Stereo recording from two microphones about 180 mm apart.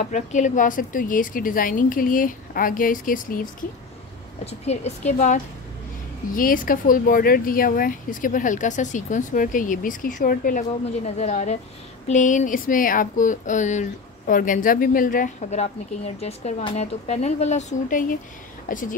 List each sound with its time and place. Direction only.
0.0 s speech: 45° left (ahead or behind)
4.5 s a woman's voice: 40° left (ahead or behind)
11.1 s a woman's voice: 40° left (ahead or behind)